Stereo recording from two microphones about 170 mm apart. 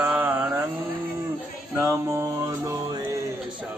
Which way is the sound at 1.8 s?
15° right (ahead or behind).